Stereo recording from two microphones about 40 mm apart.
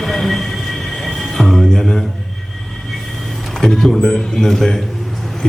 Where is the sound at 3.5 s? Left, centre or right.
Centre.